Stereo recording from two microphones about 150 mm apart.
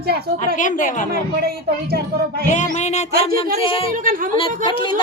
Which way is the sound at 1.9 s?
90° right.